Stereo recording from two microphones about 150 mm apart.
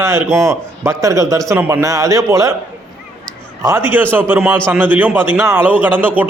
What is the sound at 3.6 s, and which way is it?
Speech, 15° right (ahead or behind).